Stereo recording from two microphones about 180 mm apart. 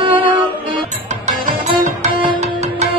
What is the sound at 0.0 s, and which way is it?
Music, 30° right (ahead or behind).